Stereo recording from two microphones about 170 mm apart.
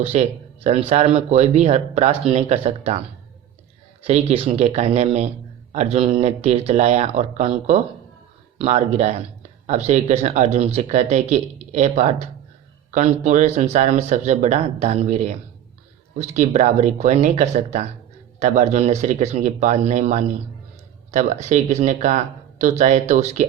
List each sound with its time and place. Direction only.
0.0 s speech: 40° right (ahead or behind)
4.0 s speech: 35° right (ahead or behind)